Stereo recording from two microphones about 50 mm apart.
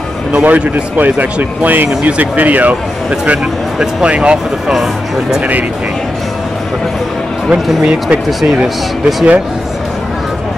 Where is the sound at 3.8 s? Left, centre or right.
Right.